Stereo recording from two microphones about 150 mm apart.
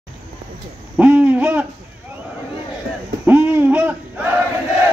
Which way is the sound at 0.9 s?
10° right (ahead or behind).